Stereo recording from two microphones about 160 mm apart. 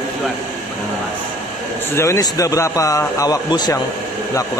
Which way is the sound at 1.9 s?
20° left (ahead or behind).